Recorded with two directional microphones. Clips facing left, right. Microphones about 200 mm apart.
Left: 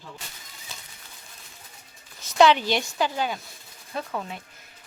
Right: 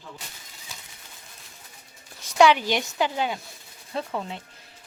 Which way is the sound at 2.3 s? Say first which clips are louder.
Even; 10° right (ahead or behind).